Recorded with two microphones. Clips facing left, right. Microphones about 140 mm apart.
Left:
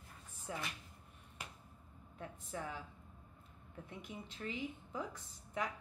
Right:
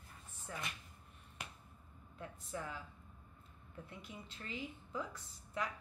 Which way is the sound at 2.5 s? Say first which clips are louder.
Even; 15° left (ahead or behind).